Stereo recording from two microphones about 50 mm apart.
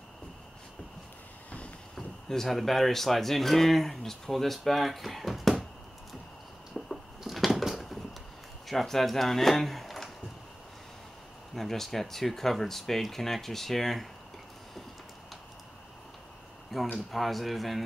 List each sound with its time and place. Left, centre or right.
2.0 s speech: centre
6.7 s a sound: centre
8.6 s speech: centre
11.5 s speech: centre
16.7 s speech: centre